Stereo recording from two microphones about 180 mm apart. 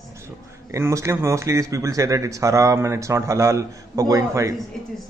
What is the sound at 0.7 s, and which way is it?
Speech, 15° right (ahead or behind).